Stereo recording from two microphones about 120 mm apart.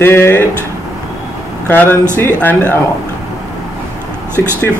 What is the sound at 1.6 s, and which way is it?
Speech, 15° left (ahead or behind).